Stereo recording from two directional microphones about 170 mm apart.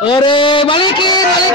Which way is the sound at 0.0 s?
30° left (ahead or behind).